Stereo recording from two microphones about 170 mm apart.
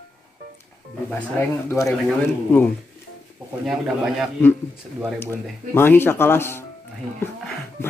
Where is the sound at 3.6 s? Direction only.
Centre (ahead or behind).